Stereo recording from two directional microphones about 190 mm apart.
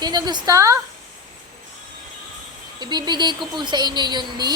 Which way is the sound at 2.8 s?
20° right (ahead or behind).